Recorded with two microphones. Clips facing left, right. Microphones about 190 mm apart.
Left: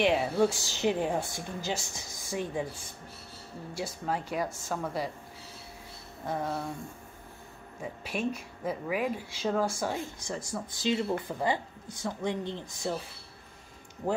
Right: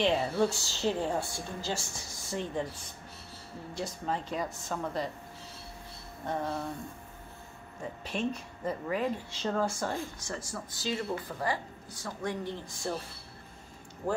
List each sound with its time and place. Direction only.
0.0 s a woman's voice: 15° left (ahead or behind)
3.7 s a woman's voice: 10° left (ahead or behind)
6.2 s a woman's voice: 5° left (ahead or behind)
7.8 s a woman's voice: 10° left (ahead or behind)